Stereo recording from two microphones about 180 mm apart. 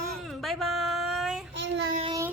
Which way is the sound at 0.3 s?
Centre (ahead or behind).